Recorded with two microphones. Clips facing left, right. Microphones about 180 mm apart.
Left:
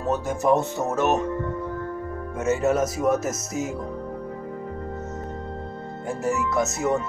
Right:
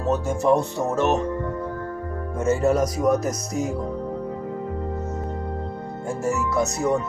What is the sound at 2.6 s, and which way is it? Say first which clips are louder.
Speech: right 1 dB; 5° left (ahead or behind).